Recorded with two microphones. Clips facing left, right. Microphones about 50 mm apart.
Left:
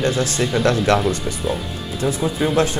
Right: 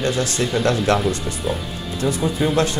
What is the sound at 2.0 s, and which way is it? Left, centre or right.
Speech, left.